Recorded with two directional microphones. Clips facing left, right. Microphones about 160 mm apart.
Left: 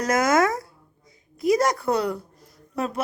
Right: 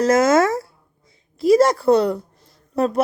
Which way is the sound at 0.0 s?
25° right (ahead or behind).